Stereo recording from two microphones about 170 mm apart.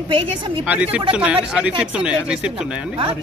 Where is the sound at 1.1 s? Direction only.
5° right (ahead or behind).